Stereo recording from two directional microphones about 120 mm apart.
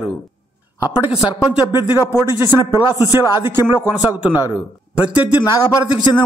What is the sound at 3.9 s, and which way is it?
Speech, 15° right (ahead or behind).